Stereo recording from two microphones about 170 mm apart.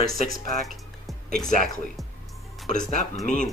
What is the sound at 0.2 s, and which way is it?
Speech, 60° right (ahead or behind).